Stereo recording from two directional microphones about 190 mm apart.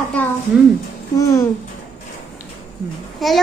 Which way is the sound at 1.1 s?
15° left (ahead or behind).